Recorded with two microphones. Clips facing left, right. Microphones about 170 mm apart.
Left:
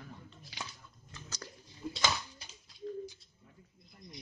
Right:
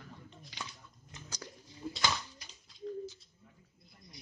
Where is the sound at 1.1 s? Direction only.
10° right (ahead or behind).